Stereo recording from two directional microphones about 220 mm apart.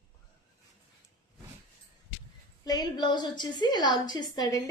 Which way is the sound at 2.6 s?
15° left (ahead or behind).